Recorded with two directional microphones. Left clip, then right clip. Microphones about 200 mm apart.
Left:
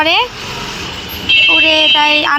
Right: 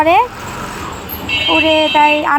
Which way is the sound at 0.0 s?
10° right (ahead or behind).